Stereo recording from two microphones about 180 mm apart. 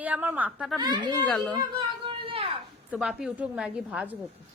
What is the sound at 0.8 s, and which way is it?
Speech, 25° right (ahead or behind).